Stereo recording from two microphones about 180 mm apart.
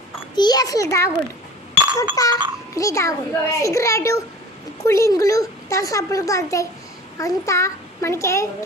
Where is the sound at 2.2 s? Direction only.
20° left (ahead or behind).